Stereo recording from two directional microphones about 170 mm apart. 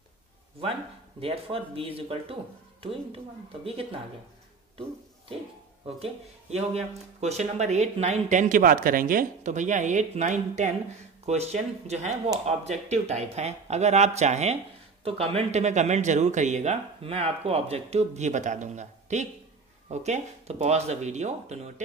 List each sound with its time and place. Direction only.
1.2 s speech: 35° right (ahead or behind)
5.9 s speech: 35° right (ahead or behind)